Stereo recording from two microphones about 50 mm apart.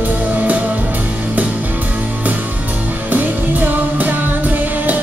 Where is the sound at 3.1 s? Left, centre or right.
Right.